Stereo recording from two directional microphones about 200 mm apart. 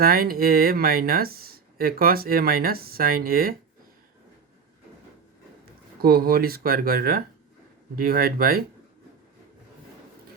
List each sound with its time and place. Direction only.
0.0 s speech: 50° right (ahead or behind)
6.0 s speech: 50° right (ahead or behind)